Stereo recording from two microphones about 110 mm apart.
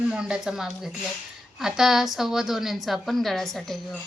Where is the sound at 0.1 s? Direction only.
5° right (ahead or behind).